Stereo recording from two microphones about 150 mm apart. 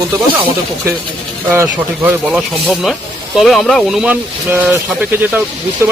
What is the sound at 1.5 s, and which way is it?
Speech, 15° right (ahead or behind).